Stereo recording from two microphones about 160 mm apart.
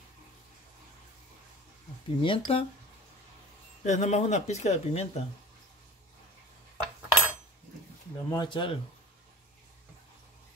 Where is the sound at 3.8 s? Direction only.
45° left (ahead or behind).